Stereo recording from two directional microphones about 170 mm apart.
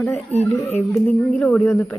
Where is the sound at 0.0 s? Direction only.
10° left (ahead or behind).